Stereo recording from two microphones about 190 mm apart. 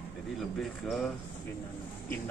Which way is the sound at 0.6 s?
Centre (ahead or behind).